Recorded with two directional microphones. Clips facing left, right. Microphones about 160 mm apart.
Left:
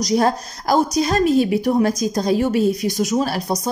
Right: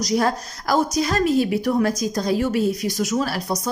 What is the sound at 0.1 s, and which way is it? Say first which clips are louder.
Speech: left 3 dB; 25° left (ahead or behind).